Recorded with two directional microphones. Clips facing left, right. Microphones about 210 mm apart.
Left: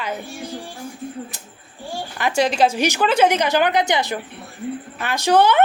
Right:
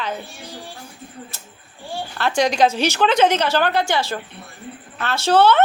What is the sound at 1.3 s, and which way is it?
Speech, 15° left (ahead or behind).